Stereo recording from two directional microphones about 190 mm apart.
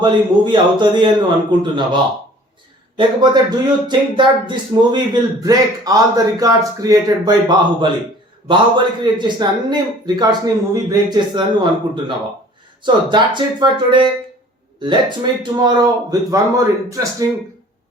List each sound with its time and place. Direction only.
0.0 s speech: 25° right (ahead or behind)
3.0 s speech: 25° right (ahead or behind)
12.8 s speech: 25° right (ahead or behind)